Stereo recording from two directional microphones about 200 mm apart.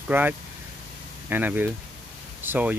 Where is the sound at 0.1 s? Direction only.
10° right (ahead or behind).